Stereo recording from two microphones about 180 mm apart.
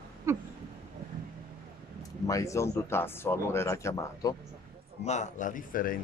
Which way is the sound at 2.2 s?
15° left (ahead or behind).